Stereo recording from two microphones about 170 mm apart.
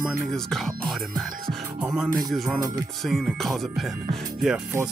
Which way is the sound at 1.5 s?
5° right (ahead or behind).